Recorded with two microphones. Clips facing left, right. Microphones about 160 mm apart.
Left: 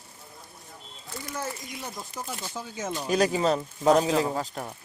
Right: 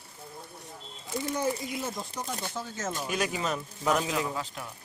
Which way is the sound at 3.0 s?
35° left (ahead or behind).